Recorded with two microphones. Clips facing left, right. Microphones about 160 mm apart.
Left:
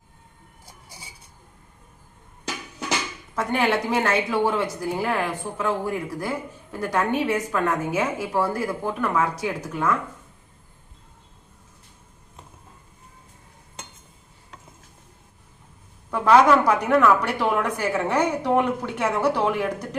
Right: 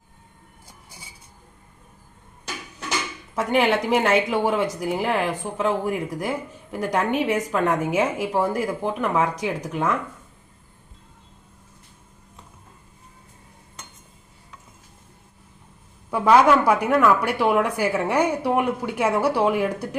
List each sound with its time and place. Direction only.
3.3 s speech: 15° right (ahead or behind)
16.0 s speech: 10° right (ahead or behind)